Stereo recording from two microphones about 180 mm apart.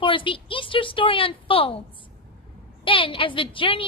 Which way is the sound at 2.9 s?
30° left (ahead or behind).